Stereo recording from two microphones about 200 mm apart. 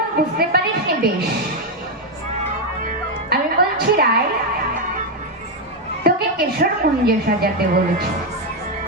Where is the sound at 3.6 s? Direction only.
50° right (ahead or behind).